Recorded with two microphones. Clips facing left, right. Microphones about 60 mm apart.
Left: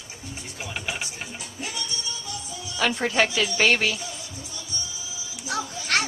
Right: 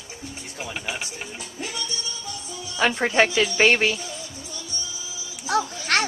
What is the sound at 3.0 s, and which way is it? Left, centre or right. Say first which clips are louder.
Speech: right 4 dB; right.